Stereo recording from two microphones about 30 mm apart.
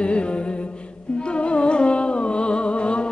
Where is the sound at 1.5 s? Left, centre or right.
Left.